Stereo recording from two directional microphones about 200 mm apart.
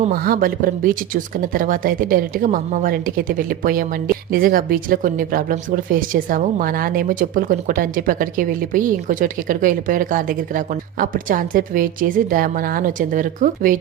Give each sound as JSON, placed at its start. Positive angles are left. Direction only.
{"t": 0.0, "sound": "speech", "side_deg": -45}